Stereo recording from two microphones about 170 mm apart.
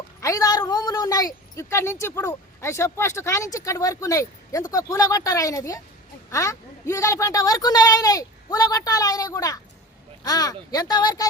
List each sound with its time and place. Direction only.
0.2 s speech: 20° left (ahead or behind)